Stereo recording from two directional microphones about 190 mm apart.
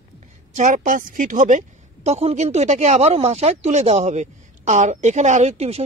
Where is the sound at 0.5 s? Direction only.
40° right (ahead or behind).